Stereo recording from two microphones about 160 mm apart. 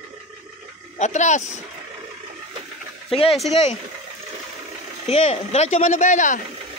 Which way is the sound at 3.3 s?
Centre (ahead or behind).